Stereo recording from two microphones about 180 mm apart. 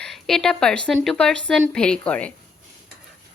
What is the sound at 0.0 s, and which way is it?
A woman's voice, 5° left (ahead or behind).